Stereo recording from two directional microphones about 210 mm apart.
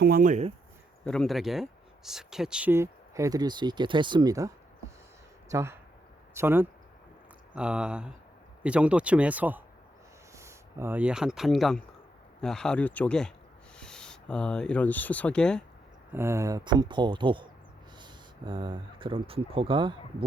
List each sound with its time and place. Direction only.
0.0 s speech: 40° right (ahead or behind)
1.0 s speech: 5° left (ahead or behind)
16.1 s speech: 15° right (ahead or behind)